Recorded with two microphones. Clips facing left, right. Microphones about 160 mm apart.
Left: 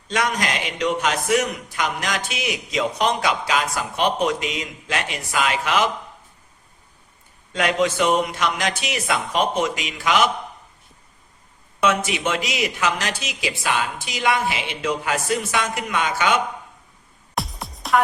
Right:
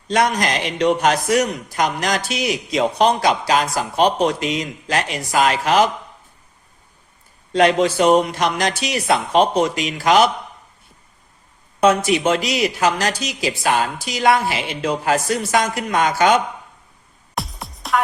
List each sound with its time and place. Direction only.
0.1 s speech: 40° right (ahead or behind)
7.5 s speech: 35° right (ahead or behind)
11.8 s speech: 40° right (ahead or behind)
17.3 s music: centre (ahead or behind)